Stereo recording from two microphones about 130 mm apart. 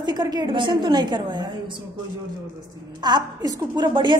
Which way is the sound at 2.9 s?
35° right (ahead or behind).